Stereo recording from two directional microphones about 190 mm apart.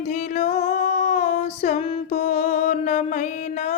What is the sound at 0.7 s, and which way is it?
Female singing, 35° left (ahead or behind).